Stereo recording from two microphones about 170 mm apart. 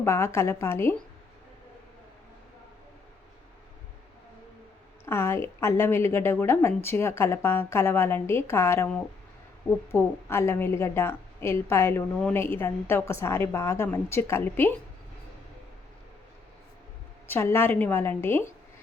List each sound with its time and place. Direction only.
0.0 s a woman's voice: 15° left (ahead or behind)
5.0 s a woman's voice: 15° left (ahead or behind)
17.2 s a woman's voice: 15° left (ahead or behind)